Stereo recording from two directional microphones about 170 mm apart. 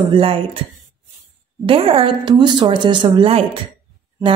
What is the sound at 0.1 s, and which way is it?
Speech, 30° right (ahead or behind).